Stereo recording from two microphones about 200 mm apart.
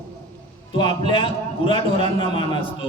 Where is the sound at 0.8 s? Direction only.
20° left (ahead or behind).